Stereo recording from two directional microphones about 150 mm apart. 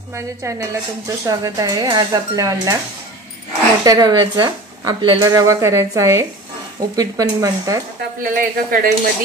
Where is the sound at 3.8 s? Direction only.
25° right (ahead or behind).